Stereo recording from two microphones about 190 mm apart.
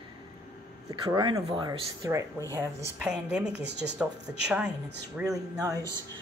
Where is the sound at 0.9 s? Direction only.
20° right (ahead or behind).